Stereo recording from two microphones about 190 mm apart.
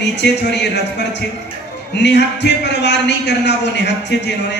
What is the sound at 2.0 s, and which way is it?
A man's voice, 65° left (ahead or behind).